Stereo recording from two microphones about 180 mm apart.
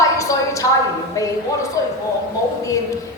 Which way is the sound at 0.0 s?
20° left (ahead or behind).